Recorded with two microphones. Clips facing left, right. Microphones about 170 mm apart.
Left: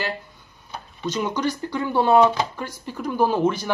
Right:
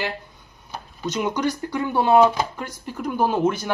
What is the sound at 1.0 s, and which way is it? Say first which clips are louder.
Speech: right 1 dB; 10° right (ahead or behind).